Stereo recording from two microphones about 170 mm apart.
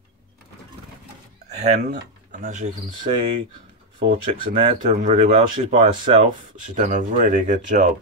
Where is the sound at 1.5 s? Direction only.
40° right (ahead or behind).